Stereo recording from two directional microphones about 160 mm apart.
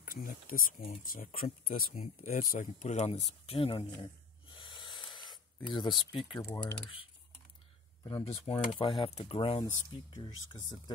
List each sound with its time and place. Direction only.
0.0 s speech: 60° left (ahead or behind); by 6.0 s 30° left (ahead or behind)
6.4 s speech: 10° left (ahead or behind)
8.0 s speech: 25° left (ahead or behind)
8.3 s speech: 35° left (ahead or behind)
10.1 s speech: 25° left (ahead or behind)